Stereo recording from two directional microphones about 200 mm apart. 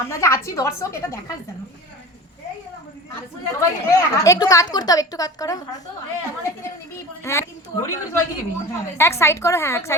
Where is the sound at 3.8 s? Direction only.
15° left (ahead or behind).